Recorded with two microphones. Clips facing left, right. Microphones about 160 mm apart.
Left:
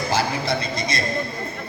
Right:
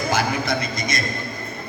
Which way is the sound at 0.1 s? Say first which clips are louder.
Even; 30° left (ahead or behind).